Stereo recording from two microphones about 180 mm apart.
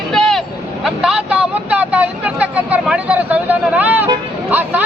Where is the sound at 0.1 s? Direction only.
Centre (ahead or behind).